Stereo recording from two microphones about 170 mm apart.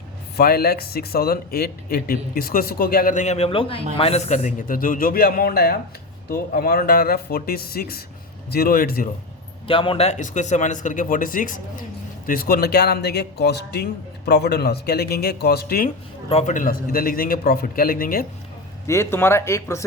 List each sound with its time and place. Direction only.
0.3 s speech: 65° left (ahead or behind)
9.6 s speech: 30° left (ahead or behind); by 15.9 s 65° left (ahead or behind)
16.3 s speech: 45° left (ahead or behind); by 18.3 s 60° left (ahead or behind)
18.9 s speech: 15° left (ahead or behind)